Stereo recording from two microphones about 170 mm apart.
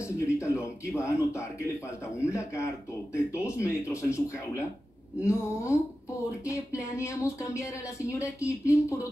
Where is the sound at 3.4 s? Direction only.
15° left (ahead or behind).